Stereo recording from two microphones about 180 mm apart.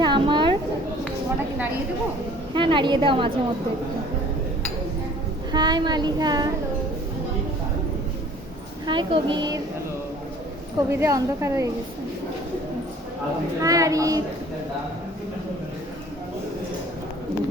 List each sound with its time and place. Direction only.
0.0 s a sound: 25° right (ahead or behind)
2.5 s a woman's voice: 25° right (ahead or behind)
5.5 s a child's voice: 25° right (ahead or behind)
8.9 s a woman's voice: 25° right (ahead or behind)
10.8 s a woman's voice: 15° right (ahead or behind)
13.6 s a woman's voice: 20° right (ahead or behind)